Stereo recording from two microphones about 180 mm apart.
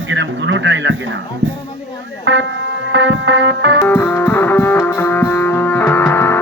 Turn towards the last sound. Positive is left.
turn(degrees=10)  # may be behind; listen again after turning